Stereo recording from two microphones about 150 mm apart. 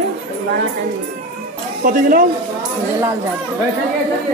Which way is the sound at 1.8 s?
70° right (ahead or behind).